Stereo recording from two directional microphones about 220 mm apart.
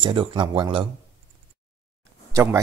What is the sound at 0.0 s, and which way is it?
Speech, 25° right (ahead or behind).